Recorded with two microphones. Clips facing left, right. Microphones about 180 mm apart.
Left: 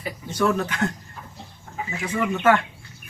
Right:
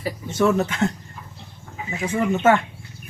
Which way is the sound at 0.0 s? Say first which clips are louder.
Right 3 dB; 25° right (ahead or behind).